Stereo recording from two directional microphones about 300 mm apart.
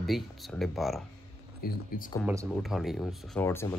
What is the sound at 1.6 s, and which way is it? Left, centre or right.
Speech, left.